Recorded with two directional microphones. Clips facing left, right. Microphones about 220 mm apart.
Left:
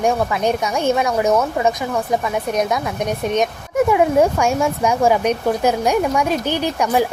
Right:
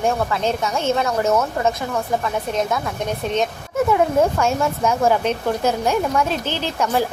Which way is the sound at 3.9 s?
15° left (ahead or behind).